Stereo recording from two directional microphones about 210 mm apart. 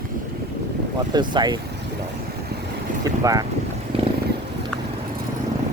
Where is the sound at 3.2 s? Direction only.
15° right (ahead or behind).